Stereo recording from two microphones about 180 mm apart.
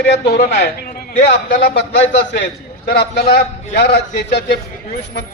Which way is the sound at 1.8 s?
75° left (ahead or behind).